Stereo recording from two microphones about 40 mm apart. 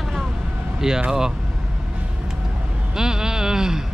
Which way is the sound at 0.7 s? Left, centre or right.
Centre.